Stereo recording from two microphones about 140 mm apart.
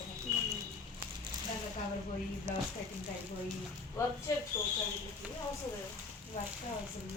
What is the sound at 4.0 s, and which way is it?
Speech, 20° left (ahead or behind).